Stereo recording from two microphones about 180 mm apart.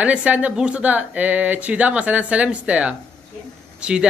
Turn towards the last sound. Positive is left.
turn(degrees=-5)  # may be behind; listen again after turning